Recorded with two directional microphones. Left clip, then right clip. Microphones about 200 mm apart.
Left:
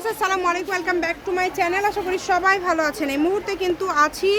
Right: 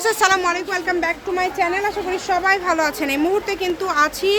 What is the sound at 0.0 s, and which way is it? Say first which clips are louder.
A woman's voice: right 5 dB; 10° right (ahead or behind).